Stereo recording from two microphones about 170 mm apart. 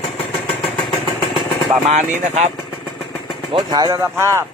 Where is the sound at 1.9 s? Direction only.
45° right (ahead or behind).